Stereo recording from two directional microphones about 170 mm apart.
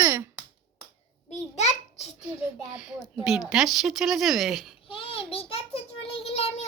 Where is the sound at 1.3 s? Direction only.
40° left (ahead or behind).